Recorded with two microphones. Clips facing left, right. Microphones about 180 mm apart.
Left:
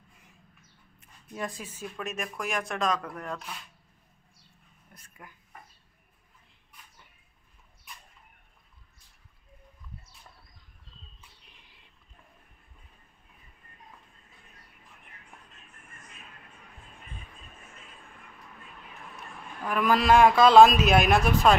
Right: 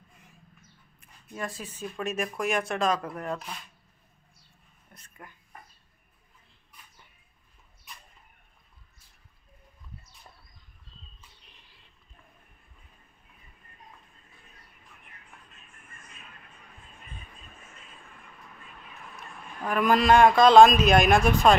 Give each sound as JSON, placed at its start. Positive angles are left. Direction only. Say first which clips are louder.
{"t": 1.3, "sound": "speech", "louder": "even", "side_deg": 15}
{"t": 1.8, "sound": "a man's voice", "louder": "right 5 dB", "side_deg": 0}
{"t": 4.9, "sound": "a sound", "louder": "right 2 dB", "side_deg": 10}
{"t": 19.7, "sound": "a man's voice", "louder": "right 1 dB", "side_deg": 5}